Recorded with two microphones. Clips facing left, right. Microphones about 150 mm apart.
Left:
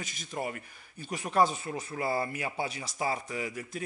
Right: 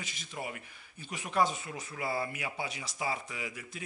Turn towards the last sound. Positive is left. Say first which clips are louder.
# left 6 dB
turn(degrees=40)  # may be behind; listen again after turning